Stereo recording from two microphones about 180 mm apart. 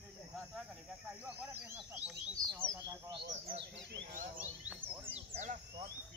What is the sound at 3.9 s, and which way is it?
Speech, 55° right (ahead or behind).